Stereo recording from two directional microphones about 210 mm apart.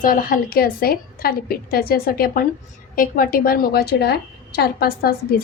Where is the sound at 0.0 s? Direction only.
40° left (ahead or behind).